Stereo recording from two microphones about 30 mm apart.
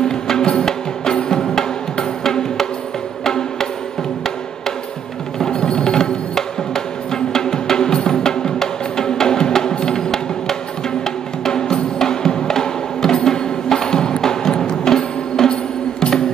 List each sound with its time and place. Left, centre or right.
0.0 s music: left
5.4 s music: left